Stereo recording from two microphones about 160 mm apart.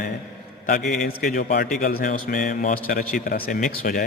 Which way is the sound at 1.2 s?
55° left (ahead or behind).